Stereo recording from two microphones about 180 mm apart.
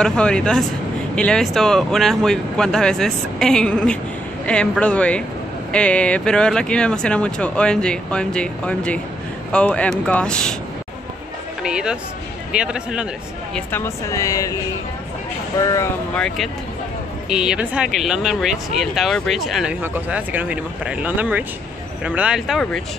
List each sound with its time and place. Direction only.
0.0 s speech: 5° left (ahead or behind)
11.6 s speech: 5° right (ahead or behind)
13.7 s speech: 15° left (ahead or behind)
17.3 s speech: 5° right (ahead or behind)